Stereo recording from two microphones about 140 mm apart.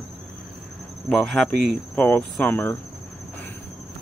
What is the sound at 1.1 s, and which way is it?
Speech, 5° left (ahead or behind).